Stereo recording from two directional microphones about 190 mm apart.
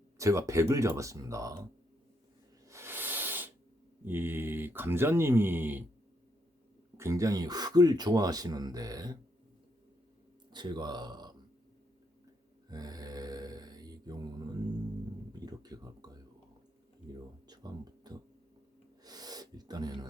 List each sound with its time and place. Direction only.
0.2 s speech: 15° right (ahead or behind)
2.6 s hiss: 15° right (ahead or behind)
4.0 s speech: 10° right (ahead or behind)
6.9 s speech: 15° right (ahead or behind)
10.5 s speech: 25° right (ahead or behind)
12.6 s mantra: 20° right (ahead or behind)
15.3 s a sound: 20° right (ahead or behind)
17.1 s a sound: 20° right (ahead or behind)